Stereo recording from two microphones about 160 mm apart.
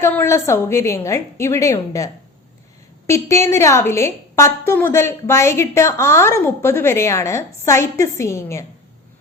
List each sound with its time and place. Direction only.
0.0 s a woman's voice: 15° left (ahead or behind)
3.1 s a woman's voice: 20° left (ahead or behind)